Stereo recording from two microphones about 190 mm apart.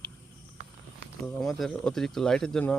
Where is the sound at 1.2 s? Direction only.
Centre (ahead or behind).